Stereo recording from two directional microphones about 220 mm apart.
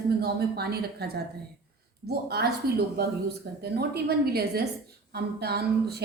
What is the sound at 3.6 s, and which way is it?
A woman's voice, 45° right (ahead or behind).